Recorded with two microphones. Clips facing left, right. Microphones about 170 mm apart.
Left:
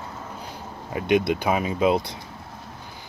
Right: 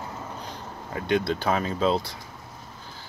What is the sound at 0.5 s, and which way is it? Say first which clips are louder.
Speech: left 7 dB; 15° left (ahead or behind).